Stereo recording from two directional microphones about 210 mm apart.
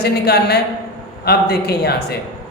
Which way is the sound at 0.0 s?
50° left (ahead or behind).